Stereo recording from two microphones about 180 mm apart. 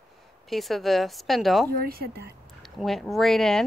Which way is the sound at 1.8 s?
55° right (ahead or behind).